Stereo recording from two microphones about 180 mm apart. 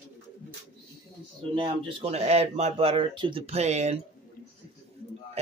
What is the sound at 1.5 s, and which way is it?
Speech, 30° right (ahead or behind).